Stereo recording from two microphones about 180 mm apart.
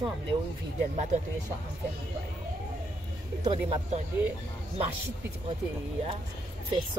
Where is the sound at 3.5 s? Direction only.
35° right (ahead or behind).